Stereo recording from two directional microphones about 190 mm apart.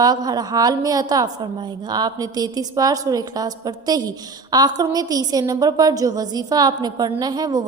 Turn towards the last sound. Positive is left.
turn(degrees=-20)  # may be behind; listen again after turning